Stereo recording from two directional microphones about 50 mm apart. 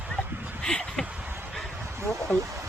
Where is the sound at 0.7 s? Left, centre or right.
Centre.